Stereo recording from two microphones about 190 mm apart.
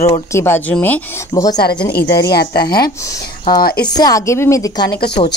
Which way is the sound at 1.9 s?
55° left (ahead or behind).